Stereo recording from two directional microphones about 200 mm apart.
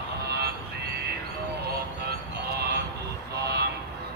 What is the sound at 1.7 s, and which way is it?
Music, 50° right (ahead or behind).